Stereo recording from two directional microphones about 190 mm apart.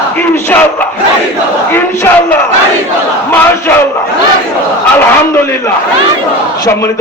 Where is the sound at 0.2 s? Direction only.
10° left (ahead or behind).